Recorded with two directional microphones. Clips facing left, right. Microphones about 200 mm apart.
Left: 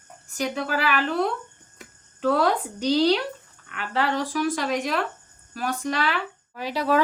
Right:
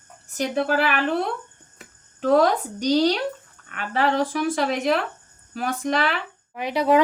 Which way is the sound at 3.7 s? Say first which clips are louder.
Right 3 dB; 50° right (ahead or behind).